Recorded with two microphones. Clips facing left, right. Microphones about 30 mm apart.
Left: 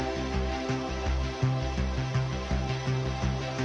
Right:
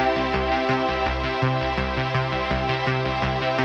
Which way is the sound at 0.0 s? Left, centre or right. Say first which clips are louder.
Right 10 dB; right.